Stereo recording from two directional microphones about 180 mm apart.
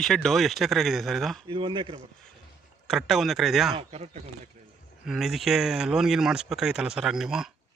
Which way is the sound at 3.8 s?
35° right (ahead or behind).